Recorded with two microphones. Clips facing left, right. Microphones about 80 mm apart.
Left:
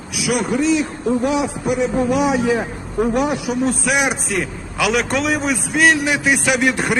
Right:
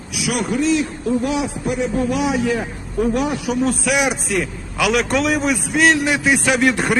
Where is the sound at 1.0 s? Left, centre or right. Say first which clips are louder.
Left 3 dB; left.